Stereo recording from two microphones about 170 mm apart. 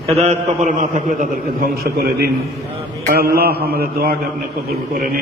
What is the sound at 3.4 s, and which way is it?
Speech, 65° right (ahead or behind).